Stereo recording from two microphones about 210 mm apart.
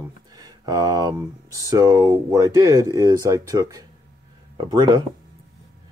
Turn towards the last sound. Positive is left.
turn(degrees=-20)  # may be behind; listen again after turning